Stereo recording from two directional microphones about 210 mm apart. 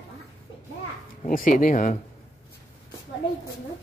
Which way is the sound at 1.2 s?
40° left (ahead or behind).